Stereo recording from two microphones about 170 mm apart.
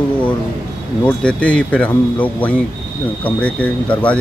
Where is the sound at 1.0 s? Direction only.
5° left (ahead or behind).